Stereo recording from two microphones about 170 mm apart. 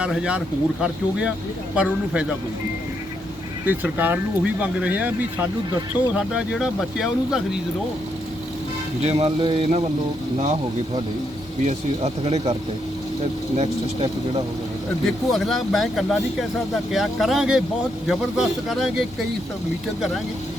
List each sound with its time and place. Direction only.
0.0 s speech: 5° right (ahead or behind)
3.7 s speech: 10° right (ahead or behind)
6.1 s speech: 5° right (ahead or behind)
9.0 s speech: 35° right (ahead or behind)
13.6 s speech: 35° right (ahead or behind)
15.3 s speech: centre (ahead or behind)